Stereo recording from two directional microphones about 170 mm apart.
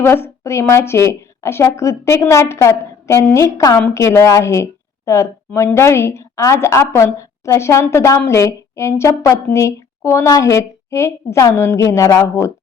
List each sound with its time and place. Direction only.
0.0 s a woman's voice: 15° left (ahead or behind)